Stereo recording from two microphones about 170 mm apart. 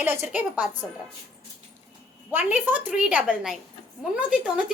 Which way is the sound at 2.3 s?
10° right (ahead or behind).